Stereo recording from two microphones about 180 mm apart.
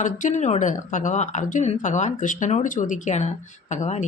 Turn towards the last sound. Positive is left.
turn(degrees=40)  # may be behind; listen again after turning